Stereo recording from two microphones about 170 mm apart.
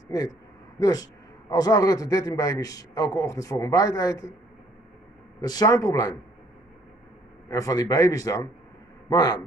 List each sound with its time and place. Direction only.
0.7 s a man's voice: 20° left (ahead or behind)
5.4 s a man's voice: 25° left (ahead or behind)
7.4 s a man's voice: 20° left (ahead or behind)